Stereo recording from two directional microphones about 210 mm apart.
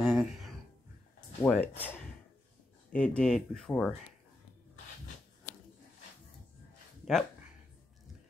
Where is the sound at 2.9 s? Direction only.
5° left (ahead or behind).